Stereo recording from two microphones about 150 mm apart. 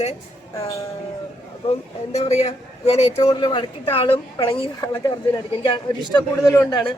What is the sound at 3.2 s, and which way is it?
A woman's voice, 30° left (ahead or behind).